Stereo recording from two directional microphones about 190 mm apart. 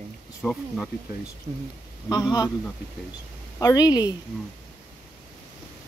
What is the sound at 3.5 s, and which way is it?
Speech, 20° left (ahead or behind).